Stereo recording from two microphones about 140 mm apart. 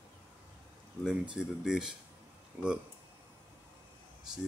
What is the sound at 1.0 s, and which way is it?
Speech, 5° right (ahead or behind).